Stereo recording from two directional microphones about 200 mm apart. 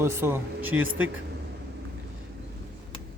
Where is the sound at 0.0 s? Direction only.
10° right (ahead or behind).